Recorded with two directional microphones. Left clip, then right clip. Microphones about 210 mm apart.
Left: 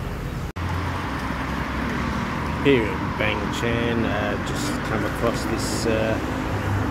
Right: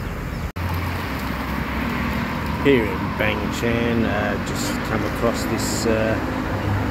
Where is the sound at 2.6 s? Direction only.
5° right (ahead or behind).